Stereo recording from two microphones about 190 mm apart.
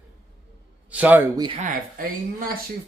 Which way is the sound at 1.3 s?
25° right (ahead or behind).